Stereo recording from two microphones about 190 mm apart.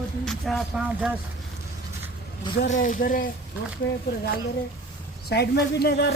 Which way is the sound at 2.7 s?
45° left (ahead or behind).